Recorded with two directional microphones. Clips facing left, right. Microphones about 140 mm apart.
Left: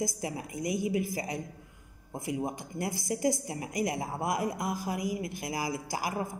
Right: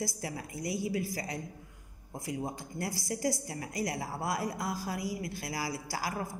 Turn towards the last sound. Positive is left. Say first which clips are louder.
# left 3 dB
turn(degrees=20)  # may be behind; listen again after turning